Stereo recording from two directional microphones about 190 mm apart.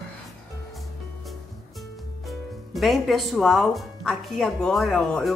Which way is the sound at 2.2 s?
Centre (ahead or behind).